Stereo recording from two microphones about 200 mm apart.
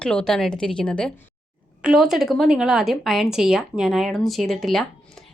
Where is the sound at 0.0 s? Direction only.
5° left (ahead or behind).